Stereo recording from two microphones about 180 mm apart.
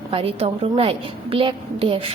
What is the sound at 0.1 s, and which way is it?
A woman's voice, 30° right (ahead or behind).